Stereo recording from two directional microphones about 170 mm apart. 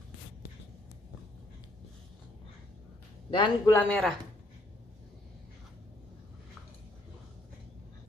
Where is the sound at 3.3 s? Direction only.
25° left (ahead or behind).